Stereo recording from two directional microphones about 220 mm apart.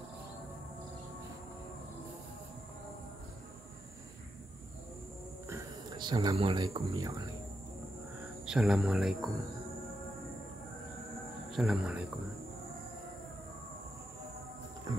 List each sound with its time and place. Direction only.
5.5 s speech: 15° right (ahead or behind)
8.5 s speech: 5° right (ahead or behind)
11.5 s speech: centre (ahead or behind)